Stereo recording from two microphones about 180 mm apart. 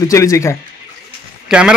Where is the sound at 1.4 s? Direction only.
5° right (ahead or behind).